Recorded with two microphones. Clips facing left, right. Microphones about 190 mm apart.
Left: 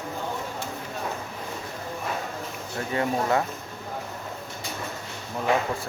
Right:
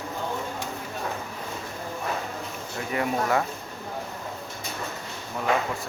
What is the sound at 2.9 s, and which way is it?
Speech, 25° left (ahead or behind).